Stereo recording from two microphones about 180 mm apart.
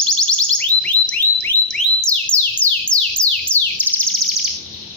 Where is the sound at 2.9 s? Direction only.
25° left (ahead or behind).